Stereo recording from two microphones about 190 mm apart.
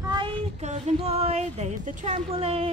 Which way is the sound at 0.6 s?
35° right (ahead or behind).